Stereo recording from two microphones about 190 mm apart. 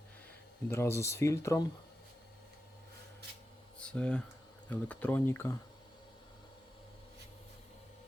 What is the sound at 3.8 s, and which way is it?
Speech, 5° left (ahead or behind).